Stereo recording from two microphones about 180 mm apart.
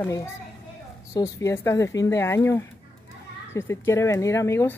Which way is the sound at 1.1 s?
15° left (ahead or behind).